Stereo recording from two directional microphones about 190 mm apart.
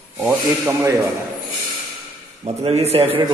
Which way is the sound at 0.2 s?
10° right (ahead or behind).